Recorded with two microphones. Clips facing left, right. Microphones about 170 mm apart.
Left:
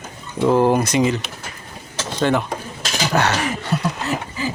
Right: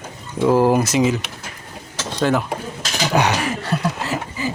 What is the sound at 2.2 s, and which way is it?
Speech, 5° right (ahead or behind).